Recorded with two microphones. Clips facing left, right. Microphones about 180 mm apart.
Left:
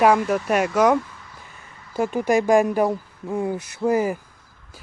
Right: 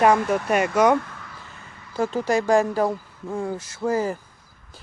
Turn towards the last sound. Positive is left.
turn(degrees=15)  # may be behind; listen again after turning